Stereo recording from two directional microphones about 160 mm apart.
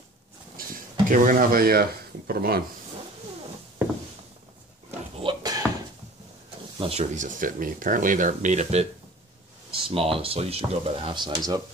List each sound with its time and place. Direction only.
1.0 s speech: 55° right (ahead or behind); by 2.6 s 70° right (ahead or behind)
5.2 s a sound: 30° right (ahead or behind)
6.8 s speech: 40° right (ahead or behind)
9.8 s speech: 35° right (ahead or behind)